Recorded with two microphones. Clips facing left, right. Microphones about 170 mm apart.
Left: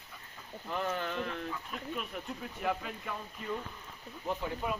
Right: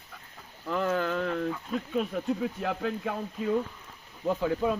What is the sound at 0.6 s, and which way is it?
Speech, 90° right.